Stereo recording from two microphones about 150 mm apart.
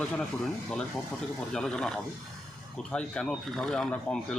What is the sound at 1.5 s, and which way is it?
A man's voice, 5° left (ahead or behind).